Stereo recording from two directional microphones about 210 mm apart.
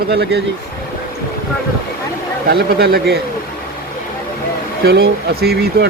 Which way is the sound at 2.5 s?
50° right (ahead or behind).